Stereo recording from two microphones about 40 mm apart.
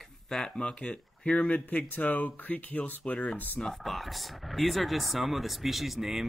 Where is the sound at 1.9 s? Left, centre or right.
Left.